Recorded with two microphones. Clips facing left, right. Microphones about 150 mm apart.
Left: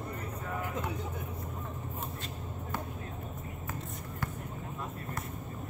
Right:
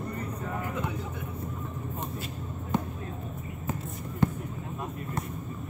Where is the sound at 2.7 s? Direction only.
20° right (ahead or behind).